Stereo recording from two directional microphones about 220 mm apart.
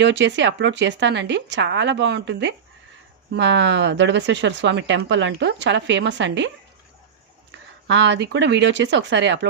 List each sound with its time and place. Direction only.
0.0 s speech: 55° right (ahead or behind)
7.9 s speech: 55° right (ahead or behind)